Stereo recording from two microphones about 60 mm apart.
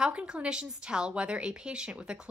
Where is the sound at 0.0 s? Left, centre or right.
Centre.